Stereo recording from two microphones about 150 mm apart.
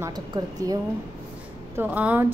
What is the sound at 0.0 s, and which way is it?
Speech, 25° right (ahead or behind).